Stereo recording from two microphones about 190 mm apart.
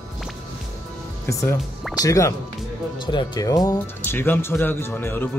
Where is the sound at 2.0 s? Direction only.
15° left (ahead or behind).